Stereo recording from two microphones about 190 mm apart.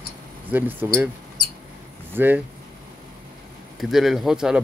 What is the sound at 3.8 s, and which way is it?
Speech, centre (ahead or behind).